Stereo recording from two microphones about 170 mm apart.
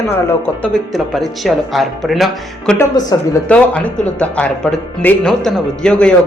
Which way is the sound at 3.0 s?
25° left (ahead or behind).